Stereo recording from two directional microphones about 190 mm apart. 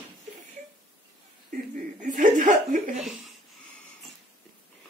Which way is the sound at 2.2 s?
40° right (ahead or behind).